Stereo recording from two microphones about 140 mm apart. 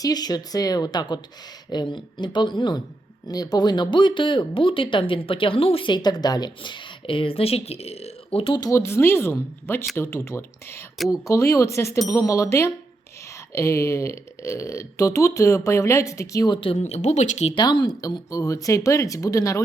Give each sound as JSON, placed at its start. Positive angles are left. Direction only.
{"t": 0.0, "sound": "speech", "side_deg": 30}
{"t": 8.7, "sound": "speech", "side_deg": 20}
{"t": 17.5, "sound": "speech", "side_deg": 30}